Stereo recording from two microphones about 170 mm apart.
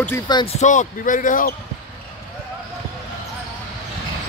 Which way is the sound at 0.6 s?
45° left (ahead or behind).